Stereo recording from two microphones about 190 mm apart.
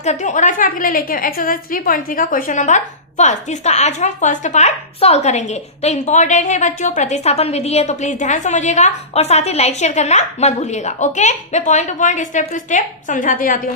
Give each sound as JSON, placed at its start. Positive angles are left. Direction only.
{"t": 0.0, "sound": "a woman's voice", "side_deg": 35}